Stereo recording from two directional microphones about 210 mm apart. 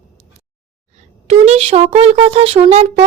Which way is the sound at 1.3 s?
30° right (ahead or behind).